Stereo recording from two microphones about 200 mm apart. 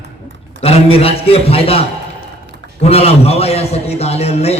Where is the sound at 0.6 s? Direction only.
30° left (ahead or behind).